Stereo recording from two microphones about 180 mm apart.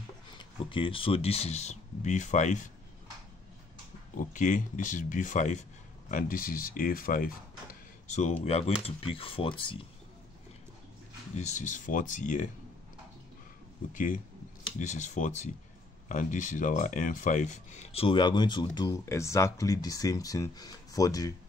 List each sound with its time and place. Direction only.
0.4 s speech: 30° left (ahead or behind)
4.2 s speech: 45° left (ahead or behind)
8.1 s speech: 40° left (ahead or behind)
11.3 s speech: 40° left (ahead or behind)
13.9 s speech: 45° left (ahead or behind); by 21.4 s 20° left (ahead or behind)